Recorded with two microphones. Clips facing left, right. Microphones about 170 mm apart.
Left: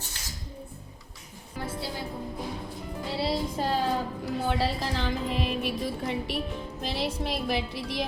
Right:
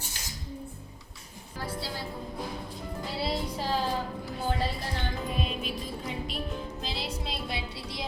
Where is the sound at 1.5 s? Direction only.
20° left (ahead or behind).